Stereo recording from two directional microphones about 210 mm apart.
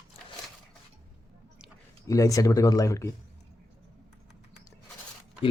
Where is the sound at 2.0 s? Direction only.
15° left (ahead or behind).